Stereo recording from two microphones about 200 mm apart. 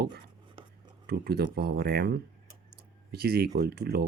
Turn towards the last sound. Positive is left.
turn(degrees=-50)  # may be behind; listen again after turning